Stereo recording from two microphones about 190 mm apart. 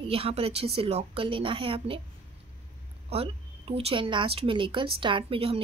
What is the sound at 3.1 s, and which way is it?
Speech, 30° right (ahead or behind).